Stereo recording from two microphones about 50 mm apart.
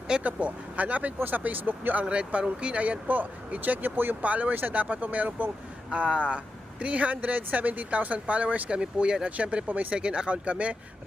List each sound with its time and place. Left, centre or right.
0.2 s speech: right
2.0 s speech: right
5.9 s speech: right
9.6 s speech: right
9.9 s speech: centre